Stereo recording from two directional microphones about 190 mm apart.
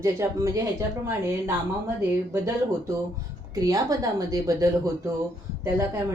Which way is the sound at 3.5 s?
20° right (ahead or behind).